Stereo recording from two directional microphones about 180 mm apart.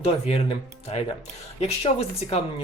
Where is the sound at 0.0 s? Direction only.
35° left (ahead or behind).